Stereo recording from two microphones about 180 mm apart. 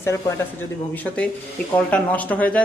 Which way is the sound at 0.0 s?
15° left (ahead or behind).